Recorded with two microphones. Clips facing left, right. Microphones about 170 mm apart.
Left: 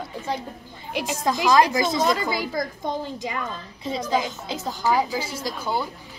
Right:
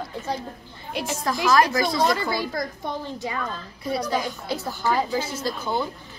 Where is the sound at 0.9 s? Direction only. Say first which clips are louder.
Left 2 dB; 15° left (ahead or behind).